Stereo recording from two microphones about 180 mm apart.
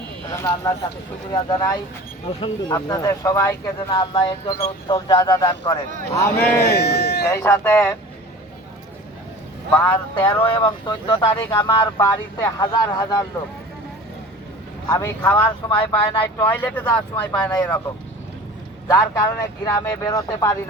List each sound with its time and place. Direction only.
0.3 s speech: 20° left (ahead or behind)
6.4 s speech: 60° left (ahead or behind)
7.3 s speech: 15° left (ahead or behind)
10.2 s speech: 30° left (ahead or behind)
11.3 s speech: 15° left (ahead or behind)
14.8 s speech: 15° left (ahead or behind)
18.9 s speech: 15° left (ahead or behind)